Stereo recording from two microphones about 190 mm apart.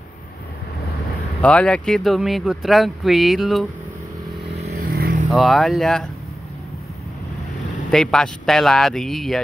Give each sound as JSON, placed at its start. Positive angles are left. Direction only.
{"t": 1.4, "sound": "speech", "side_deg": 5}
{"t": 4.6, "sound": "vehicle", "side_deg": -40}
{"t": 4.8, "sound": "vehicle", "side_deg": -50}
{"t": 5.3, "sound": "speech", "side_deg": 0}
{"t": 7.9, "sound": "speech", "side_deg": 5}